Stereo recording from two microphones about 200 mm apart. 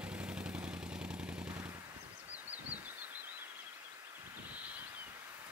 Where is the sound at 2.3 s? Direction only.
10° right (ahead or behind).